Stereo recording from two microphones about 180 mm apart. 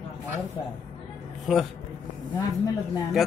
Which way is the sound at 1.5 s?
Centre (ahead or behind).